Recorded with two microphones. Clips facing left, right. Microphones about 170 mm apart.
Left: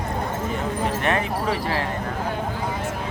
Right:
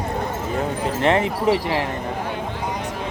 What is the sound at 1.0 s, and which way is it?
Speech, 25° right (ahead or behind).